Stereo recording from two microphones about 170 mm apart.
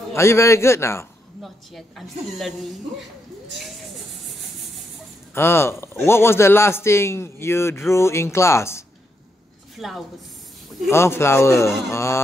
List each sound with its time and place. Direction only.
0.1 s a man's voice: 15° left (ahead or behind)
1.4 s a woman's voice: centre (ahead or behind)
5.3 s a man's voice: 15° left (ahead or behind)
9.8 s a woman's voice: centre (ahead or behind)
10.7 s a man's voice: 15° left (ahead or behind)